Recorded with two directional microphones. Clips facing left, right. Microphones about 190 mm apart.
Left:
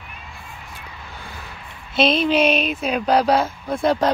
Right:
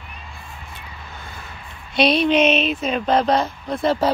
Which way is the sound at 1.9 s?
Centre (ahead or behind).